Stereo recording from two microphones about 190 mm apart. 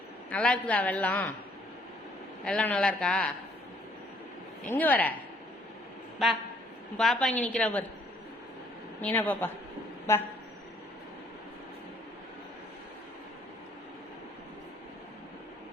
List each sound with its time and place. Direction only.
0.3 s a woman's voice: 5° left (ahead or behind)
2.4 s a man's voice: 5° left (ahead or behind)
4.7 s a woman's voice: 10° left (ahead or behind)
6.2 s a man's voice: centre (ahead or behind)
9.0 s a woman's voice: 10° left (ahead or behind)